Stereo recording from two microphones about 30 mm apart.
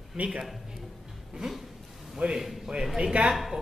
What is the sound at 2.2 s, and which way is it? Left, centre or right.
Speech, right.